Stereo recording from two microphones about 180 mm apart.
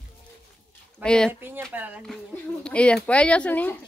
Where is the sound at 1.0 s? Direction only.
5° left (ahead or behind).